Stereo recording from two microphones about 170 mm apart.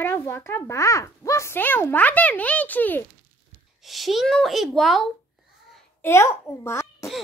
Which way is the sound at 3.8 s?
Centre (ahead or behind).